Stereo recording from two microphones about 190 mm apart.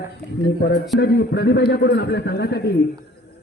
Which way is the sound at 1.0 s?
60° left (ahead or behind).